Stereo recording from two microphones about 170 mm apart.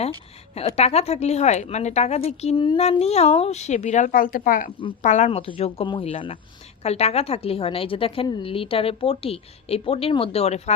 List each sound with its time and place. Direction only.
0.0 s a woman's voice: 35° left (ahead or behind); by 4.7 s 55° left (ahead or behind)
5.0 s a woman's voice: 45° left (ahead or behind)